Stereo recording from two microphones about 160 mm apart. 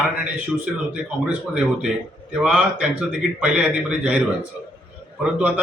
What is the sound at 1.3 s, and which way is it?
A man's voice, 5° right (ahead or behind).